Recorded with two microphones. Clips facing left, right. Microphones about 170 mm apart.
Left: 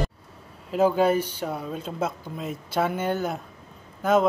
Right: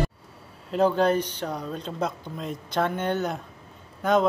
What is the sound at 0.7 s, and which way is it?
Speech, 5° left (ahead or behind).